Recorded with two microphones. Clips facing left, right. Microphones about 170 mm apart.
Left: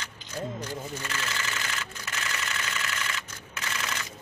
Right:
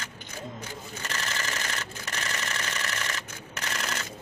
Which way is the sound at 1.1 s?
40° right (ahead or behind).